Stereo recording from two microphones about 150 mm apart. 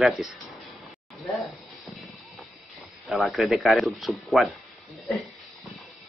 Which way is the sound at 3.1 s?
Centre (ahead or behind).